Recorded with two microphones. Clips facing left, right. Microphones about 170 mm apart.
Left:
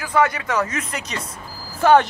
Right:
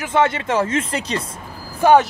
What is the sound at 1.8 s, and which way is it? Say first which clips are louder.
Speech: right 1 dB; 10° right (ahead or behind).